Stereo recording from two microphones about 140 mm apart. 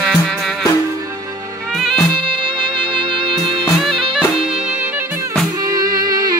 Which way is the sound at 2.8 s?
35° right (ahead or behind).